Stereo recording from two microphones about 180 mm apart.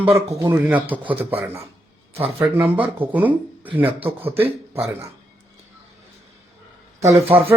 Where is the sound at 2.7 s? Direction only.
10° right (ahead or behind).